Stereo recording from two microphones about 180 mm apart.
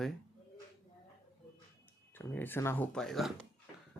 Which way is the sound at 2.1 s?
10° left (ahead or behind).